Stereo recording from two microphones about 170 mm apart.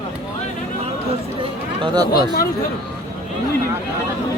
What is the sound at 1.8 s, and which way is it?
Speech, 25° right (ahead or behind).